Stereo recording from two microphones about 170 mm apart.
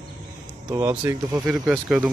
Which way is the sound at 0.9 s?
15° right (ahead or behind).